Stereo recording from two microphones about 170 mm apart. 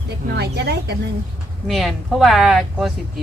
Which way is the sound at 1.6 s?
Centre (ahead or behind).